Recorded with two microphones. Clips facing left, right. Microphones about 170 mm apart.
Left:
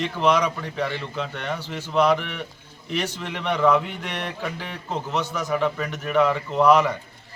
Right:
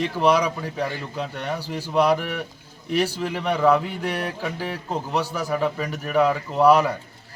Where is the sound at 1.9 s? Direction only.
10° right (ahead or behind).